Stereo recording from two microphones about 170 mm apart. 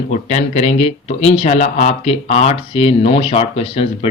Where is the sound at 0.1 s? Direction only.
45° left (ahead or behind).